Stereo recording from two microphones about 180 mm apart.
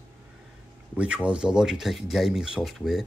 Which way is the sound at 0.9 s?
5° right (ahead or behind).